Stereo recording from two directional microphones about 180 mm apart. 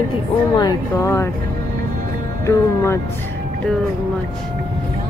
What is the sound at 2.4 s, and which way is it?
Speech, 15° left (ahead or behind).